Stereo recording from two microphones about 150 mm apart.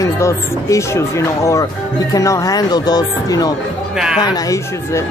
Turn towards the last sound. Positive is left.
turn(degrees=25)  # may be behind; listen again after turning